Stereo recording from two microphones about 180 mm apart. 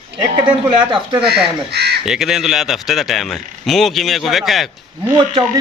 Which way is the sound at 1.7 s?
65° right (ahead or behind).